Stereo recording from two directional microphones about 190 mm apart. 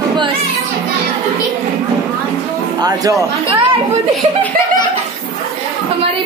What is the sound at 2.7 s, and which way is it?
Speech, 20° right (ahead or behind).